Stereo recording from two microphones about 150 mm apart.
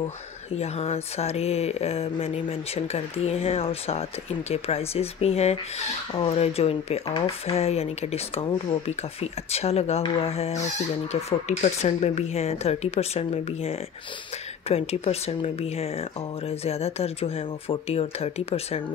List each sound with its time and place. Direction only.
0.6 s speech: 45° left (ahead or behind)